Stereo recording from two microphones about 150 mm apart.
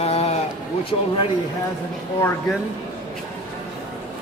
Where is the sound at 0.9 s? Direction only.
35° left (ahead or behind).